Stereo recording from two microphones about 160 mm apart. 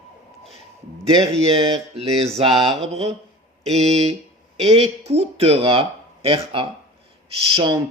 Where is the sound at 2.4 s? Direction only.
30° right (ahead or behind).